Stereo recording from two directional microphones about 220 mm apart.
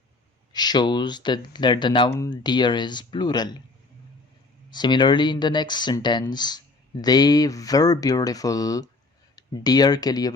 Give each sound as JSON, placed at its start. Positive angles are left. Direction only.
{"t": 0.5, "sound": "speech", "side_deg": 20}
{"t": 4.7, "sound": "speech", "side_deg": 20}